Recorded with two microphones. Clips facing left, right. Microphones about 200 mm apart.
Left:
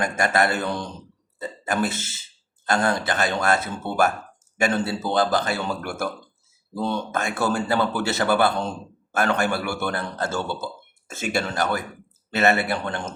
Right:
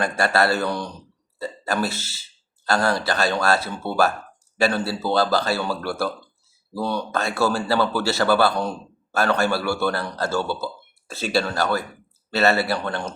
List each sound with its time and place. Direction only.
0.0 s speech: 30° right (ahead or behind)
0.3 s a man's voice: 20° left (ahead or behind)
4.7 s a man's voice: 20° left (ahead or behind)
11.1 s speech: 30° right (ahead or behind)
11.4 s a man's voice: 20° left (ahead or behind)